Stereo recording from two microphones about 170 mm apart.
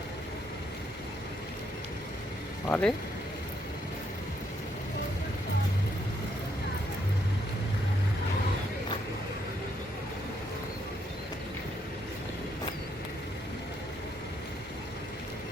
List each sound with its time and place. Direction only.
2.6 s speech: 10° left (ahead or behind)